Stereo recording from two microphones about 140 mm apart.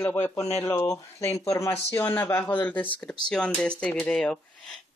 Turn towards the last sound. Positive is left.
turn(degrees=5)  # may be behind; listen again after turning